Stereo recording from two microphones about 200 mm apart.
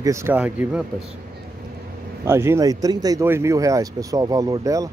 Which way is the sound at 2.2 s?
10° right (ahead or behind).